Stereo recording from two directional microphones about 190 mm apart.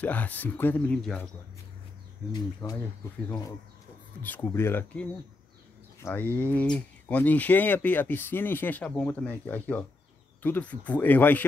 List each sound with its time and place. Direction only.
0.0 s speech: 10° left (ahead or behind)
2.3 s speech: 20° left (ahead or behind)
6.0 s speech: 10° left (ahead or behind)